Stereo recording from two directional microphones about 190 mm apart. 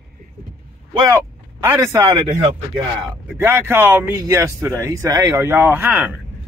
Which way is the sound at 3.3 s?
10° right (ahead or behind).